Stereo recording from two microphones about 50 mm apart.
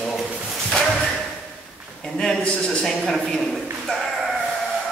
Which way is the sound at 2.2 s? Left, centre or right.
Centre.